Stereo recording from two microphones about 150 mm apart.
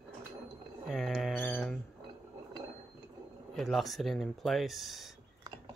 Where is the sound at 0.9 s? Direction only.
Centre (ahead or behind).